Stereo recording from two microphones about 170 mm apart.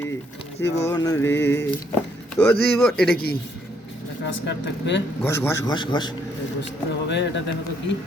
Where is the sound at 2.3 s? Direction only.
10° left (ahead or behind).